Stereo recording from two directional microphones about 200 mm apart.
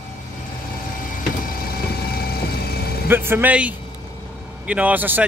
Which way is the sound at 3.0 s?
10° right (ahead or behind).